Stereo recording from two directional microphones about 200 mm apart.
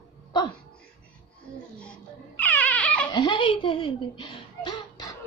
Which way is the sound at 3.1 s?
20° left (ahead or behind).